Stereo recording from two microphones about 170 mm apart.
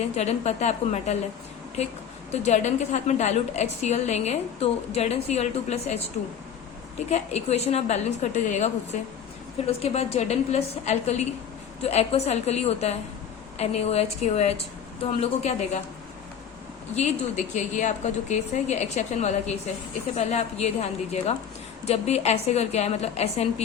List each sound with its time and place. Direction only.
0.2 s a woman's voice: 40° left (ahead or behind)
7.1 s a woman's voice: 40° left (ahead or behind)
16.9 s a woman's voice: 45° left (ahead or behind)